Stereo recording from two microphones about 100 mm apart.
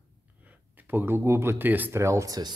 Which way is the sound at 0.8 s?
20° right (ahead or behind).